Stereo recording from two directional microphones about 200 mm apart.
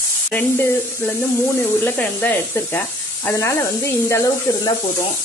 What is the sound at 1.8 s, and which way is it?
Speech, 10° left (ahead or behind).